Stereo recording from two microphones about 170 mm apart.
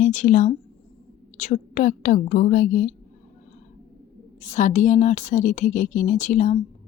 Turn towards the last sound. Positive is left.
turn(degrees=45)  # may be behind; listen again after turning